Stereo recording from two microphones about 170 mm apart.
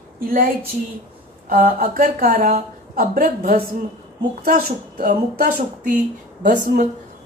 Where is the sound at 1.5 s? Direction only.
55° right (ahead or behind).